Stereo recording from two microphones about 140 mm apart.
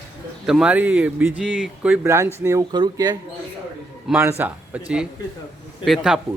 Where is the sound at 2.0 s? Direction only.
20° right (ahead or behind).